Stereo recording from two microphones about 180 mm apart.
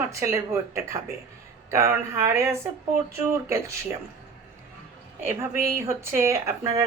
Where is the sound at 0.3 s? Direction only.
15° right (ahead or behind).